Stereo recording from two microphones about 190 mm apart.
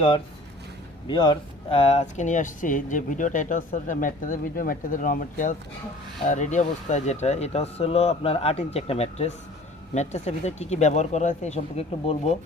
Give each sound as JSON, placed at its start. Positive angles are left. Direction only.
{"t": 1.0, "sound": "speech", "side_deg": 25}